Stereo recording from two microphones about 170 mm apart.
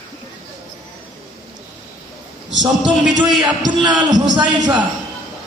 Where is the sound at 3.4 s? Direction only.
25° right (ahead or behind).